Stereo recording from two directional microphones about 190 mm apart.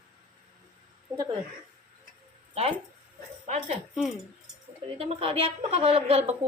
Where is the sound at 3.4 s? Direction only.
35° right (ahead or behind).